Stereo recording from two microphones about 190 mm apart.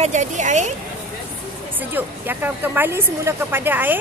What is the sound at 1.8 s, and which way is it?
Speech, 10° right (ahead or behind).